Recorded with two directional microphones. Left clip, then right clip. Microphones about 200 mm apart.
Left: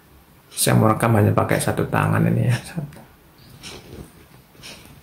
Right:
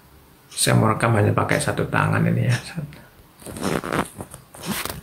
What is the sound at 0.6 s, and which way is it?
Speech, 30° left (ahead or behind).